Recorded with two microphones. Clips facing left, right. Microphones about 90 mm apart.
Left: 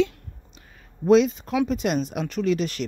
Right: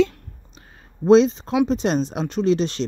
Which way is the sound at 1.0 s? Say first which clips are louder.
Right 3 dB; 30° right (ahead or behind).